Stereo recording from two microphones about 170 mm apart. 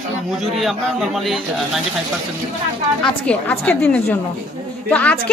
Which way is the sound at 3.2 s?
10° left (ahead or behind).